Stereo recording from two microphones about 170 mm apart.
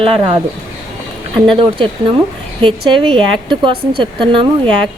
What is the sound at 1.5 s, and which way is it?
Speech, 30° right (ahead or behind).